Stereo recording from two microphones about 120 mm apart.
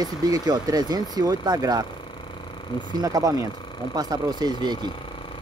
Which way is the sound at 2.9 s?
30° right (ahead or behind).